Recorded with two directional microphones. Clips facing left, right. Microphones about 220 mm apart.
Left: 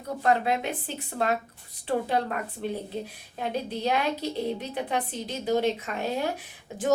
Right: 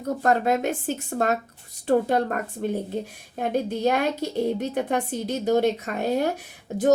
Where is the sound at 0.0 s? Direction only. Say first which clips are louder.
Right 3 dB; 45° right (ahead or behind).